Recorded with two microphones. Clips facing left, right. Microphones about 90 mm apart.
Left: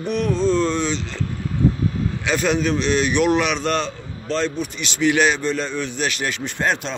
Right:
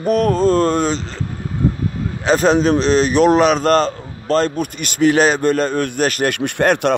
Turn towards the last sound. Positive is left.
turn(degrees=-60)  # may be behind; listen again after turning